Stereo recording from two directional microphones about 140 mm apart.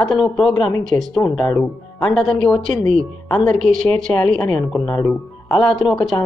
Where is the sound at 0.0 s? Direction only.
Centre (ahead or behind).